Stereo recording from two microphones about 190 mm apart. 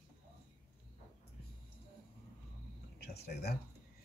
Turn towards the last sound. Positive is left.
turn(degrees=60)  # may be behind; listen again after turning